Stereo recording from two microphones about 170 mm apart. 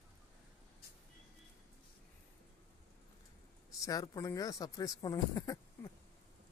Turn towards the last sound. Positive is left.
turn(degrees=20)  # may be behind; listen again after turning